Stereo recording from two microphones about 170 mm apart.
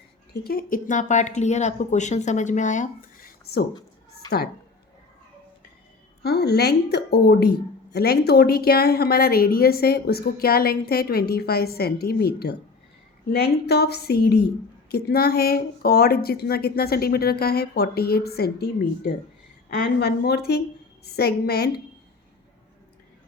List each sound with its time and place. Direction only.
0.4 s speech: 55° left (ahead or behind)
6.2 s a woman's voice: 70° left (ahead or behind)